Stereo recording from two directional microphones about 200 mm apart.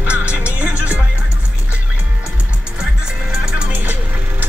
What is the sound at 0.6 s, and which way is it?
Music, 5° right (ahead or behind).